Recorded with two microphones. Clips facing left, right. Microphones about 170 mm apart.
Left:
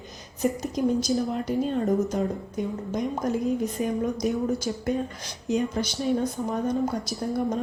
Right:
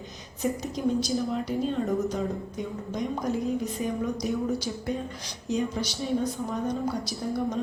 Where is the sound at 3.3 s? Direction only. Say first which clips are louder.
Left 2 dB; centre (ahead or behind).